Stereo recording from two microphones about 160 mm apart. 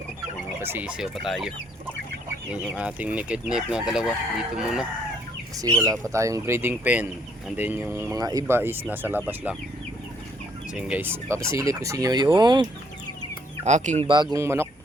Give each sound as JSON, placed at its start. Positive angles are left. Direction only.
{"t": 0.6, "sound": "speech", "side_deg": -10}
{"t": 5.8, "sound": "speech", "side_deg": -20}
{"t": 10.8, "sound": "speech", "side_deg": -10}
{"t": 13.7, "sound": "speech", "side_deg": -50}
{"t": 14.3, "sound": "speech", "side_deg": -15}